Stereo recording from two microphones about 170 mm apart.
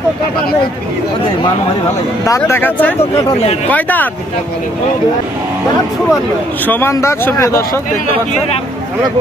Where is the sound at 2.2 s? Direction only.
20° left (ahead or behind).